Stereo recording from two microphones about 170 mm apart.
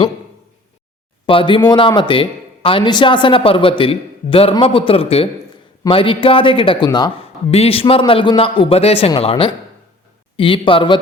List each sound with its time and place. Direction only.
1.3 s speech: 30° left (ahead or behind)
7.5 s speech: 35° left (ahead or behind)